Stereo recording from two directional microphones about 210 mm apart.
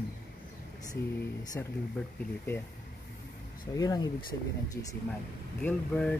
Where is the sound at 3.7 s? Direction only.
20° left (ahead or behind).